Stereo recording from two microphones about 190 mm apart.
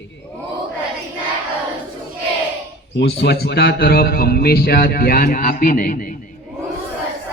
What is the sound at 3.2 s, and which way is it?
A man's voice, 55° left (ahead or behind).